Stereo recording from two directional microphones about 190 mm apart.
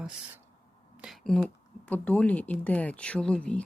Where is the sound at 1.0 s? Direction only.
Centre (ahead or behind).